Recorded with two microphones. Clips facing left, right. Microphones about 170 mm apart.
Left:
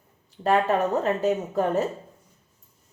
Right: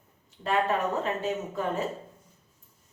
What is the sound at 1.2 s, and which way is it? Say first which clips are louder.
Speech: left 7 dB; 40° left (ahead or behind).